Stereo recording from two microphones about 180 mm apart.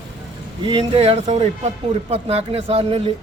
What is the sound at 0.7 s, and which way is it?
Speech, 30° right (ahead or behind).